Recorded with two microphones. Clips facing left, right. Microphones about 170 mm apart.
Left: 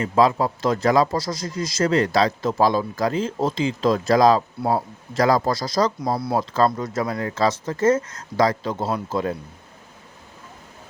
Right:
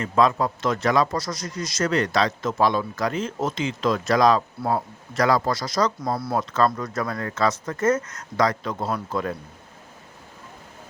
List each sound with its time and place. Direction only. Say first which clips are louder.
0.0 s a man's voice: left 2 dB; 30° left (ahead or behind)